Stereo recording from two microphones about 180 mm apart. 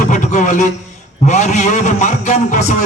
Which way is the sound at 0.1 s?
40° left (ahead or behind).